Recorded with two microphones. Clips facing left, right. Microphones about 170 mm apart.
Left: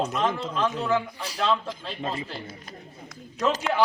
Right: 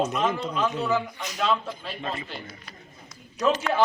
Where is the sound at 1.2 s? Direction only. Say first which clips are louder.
Even; 30° left (ahead or behind).